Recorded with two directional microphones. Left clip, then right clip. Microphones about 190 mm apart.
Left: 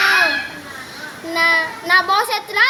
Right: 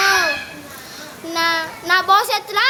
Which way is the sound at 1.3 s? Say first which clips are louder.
Left 4 dB; 25° right (ahead or behind).